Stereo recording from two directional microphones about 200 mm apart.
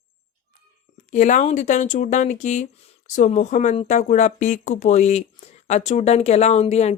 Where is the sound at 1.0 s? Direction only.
35° left (ahead or behind).